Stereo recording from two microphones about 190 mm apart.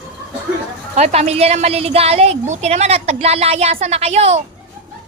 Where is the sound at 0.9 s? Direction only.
35° right (ahead or behind).